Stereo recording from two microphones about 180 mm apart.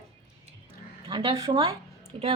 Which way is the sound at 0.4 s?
30° right (ahead or behind).